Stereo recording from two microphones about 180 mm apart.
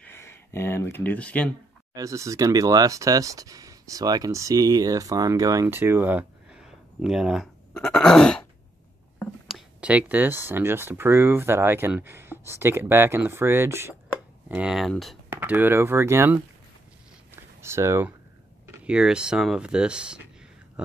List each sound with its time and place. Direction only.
0.0 s speech: 15° left (ahead or behind)
2.0 s speech: 15° right (ahead or behind); by 15.1 s centre (ahead or behind)
15.2 s speech: 10° right (ahead or behind)
17.6 s speech: 15° right (ahead or behind)